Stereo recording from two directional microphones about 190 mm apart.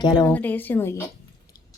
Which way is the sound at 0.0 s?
25° left (ahead or behind).